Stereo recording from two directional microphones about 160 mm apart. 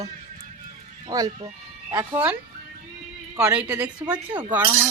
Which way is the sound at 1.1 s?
20° right (ahead or behind).